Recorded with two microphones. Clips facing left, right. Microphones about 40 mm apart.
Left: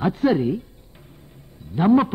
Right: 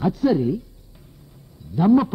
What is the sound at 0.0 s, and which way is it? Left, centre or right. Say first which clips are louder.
A man's voice: even; left.